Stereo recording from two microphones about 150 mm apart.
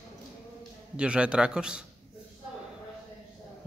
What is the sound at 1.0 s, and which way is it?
Speech, 5° right (ahead or behind).